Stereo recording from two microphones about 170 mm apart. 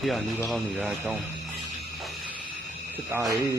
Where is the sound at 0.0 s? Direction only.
Centre (ahead or behind).